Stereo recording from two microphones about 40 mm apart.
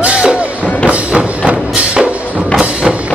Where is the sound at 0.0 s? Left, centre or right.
Right.